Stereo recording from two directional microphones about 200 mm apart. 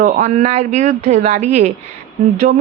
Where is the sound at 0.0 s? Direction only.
35° right (ahead or behind).